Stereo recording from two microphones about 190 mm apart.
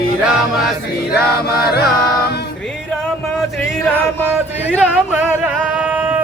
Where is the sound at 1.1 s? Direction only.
55° left (ahead or behind).